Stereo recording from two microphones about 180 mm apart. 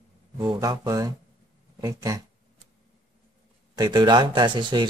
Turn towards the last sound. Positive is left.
turn(degrees=-25)  # may be behind; listen again after turning